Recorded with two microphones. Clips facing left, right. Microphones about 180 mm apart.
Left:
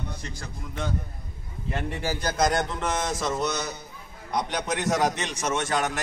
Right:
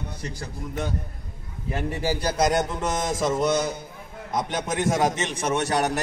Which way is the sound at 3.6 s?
50° right (ahead or behind).